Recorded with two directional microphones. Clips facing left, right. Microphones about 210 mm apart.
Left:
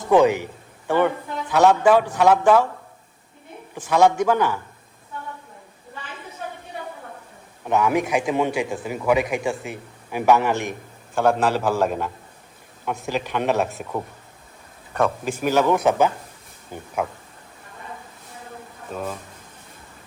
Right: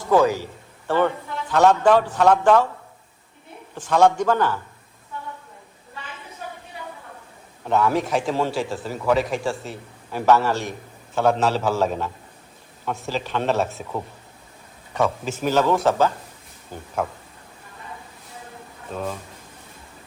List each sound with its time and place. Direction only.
0.1 s a man's voice: 20° left (ahead or behind)
3.8 s a man's voice: 10° left (ahead or behind)
7.6 s a man's voice: 15° left (ahead or behind)
15.2 s a man's voice: 10° left (ahead or behind)
17.0 s a man's voice: 5° left (ahead or behind)